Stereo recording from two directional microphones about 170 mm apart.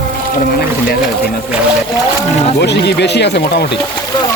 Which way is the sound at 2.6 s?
80° left.